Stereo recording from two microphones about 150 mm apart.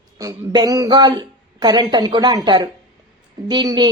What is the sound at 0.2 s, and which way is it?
A woman's voice, 25° right (ahead or behind).